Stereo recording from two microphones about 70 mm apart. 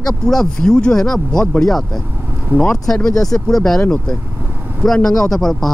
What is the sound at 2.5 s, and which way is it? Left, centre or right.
Speech, right.